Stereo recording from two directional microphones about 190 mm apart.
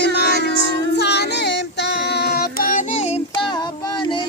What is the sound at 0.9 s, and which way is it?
Child singing, 60° left (ahead or behind).